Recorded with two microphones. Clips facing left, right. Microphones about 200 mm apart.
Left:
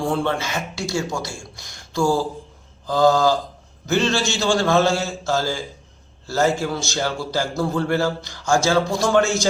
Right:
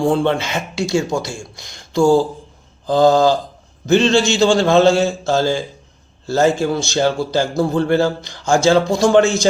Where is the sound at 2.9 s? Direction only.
25° right (ahead or behind).